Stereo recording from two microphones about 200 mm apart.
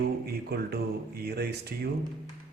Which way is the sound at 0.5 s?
50° right (ahead or behind).